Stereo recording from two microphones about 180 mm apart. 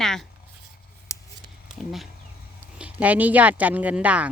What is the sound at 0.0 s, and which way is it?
Writing, 5° left (ahead or behind).